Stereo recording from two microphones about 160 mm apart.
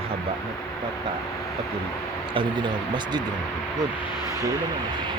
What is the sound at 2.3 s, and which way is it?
Speech, 30° right (ahead or behind).